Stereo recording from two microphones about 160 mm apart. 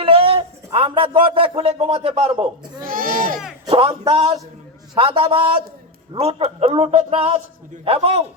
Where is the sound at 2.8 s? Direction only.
60° right (ahead or behind).